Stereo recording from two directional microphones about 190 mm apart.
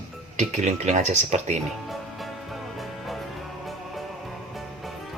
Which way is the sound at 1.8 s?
Centre (ahead or behind).